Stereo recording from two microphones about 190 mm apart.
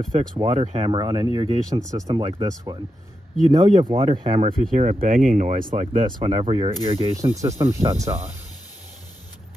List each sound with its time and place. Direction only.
0.4 s speech: 35° right (ahead or behind)
0.8 s speech: 25° right (ahead or behind)
3.5 s speech: 20° right (ahead or behind); by 6.2 s 45° right (ahead or behind)
6.2 s speech: 30° right (ahead or behind)